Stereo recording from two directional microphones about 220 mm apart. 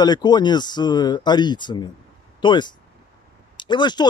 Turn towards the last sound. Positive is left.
turn(degrees=20)  # may be behind; listen again after turning